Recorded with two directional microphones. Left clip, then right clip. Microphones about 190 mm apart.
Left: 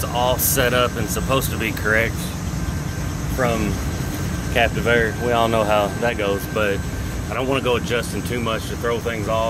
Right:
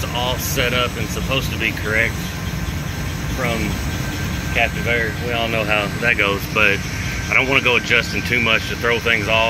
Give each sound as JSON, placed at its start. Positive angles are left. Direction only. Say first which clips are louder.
{"t": 0.1, "sound": "speech", "louder": "left 3 dB", "side_deg": 15}
{"t": 4.6, "sound": "speech", "louder": "left 1 dB", "side_deg": 30}